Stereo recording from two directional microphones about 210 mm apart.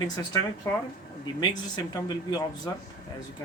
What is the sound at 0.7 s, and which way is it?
Speech, 10° left (ahead or behind).